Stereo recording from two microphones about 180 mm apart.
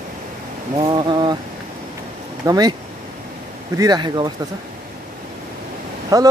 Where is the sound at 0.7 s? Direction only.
25° right (ahead or behind).